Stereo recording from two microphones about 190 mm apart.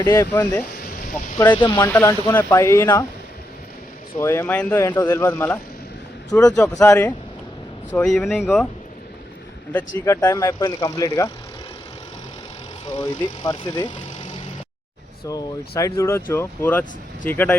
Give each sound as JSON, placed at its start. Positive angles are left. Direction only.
{"t": 0.0, "sound": "speech", "side_deg": 15}
{"t": 1.5, "sound": "speech", "side_deg": 25}
{"t": 1.9, "sound": "speech", "side_deg": 15}
{"t": 4.2, "sound": "speech", "side_deg": 15}
{"t": 10.0, "sound": "speech", "side_deg": 15}
{"t": 13.0, "sound": "speech", "side_deg": 20}
{"t": 15.3, "sound": "speech", "side_deg": 20}